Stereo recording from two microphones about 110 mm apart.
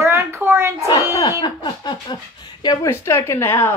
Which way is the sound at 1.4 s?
40° left (ahead or behind).